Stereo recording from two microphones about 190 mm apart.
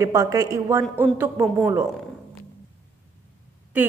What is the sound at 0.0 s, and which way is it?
A woman's voice, 20° right (ahead or behind).